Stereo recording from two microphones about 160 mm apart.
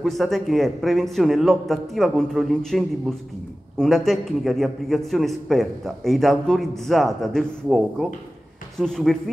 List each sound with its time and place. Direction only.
0.0 s a man's voice: centre (ahead or behind)